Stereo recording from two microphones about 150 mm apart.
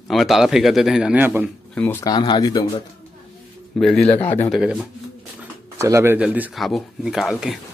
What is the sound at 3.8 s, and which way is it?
Speech, 5° left (ahead or behind).